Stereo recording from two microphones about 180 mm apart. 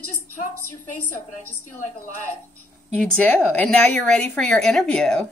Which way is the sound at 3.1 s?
10° left (ahead or behind).